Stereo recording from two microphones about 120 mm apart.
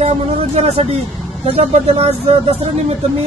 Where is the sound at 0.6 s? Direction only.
60° right (ahead or behind).